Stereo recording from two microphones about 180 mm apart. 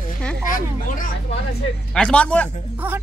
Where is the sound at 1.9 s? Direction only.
5° left (ahead or behind).